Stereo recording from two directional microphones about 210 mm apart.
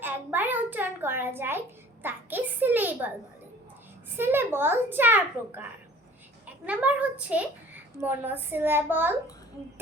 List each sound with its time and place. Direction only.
0.0 s a child's voice: 10° right (ahead or behind)
4.2 s a child's voice: 10° right (ahead or behind)
6.7 s a child's voice: 5° right (ahead or behind)